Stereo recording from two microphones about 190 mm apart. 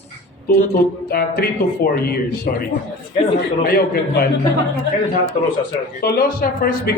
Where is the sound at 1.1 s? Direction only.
55° left (ahead or behind).